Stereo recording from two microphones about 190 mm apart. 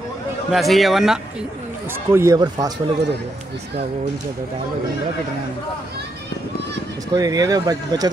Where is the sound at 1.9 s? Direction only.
15° right (ahead or behind).